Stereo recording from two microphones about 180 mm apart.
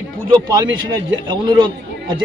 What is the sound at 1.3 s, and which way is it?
Speech, 25° right (ahead or behind).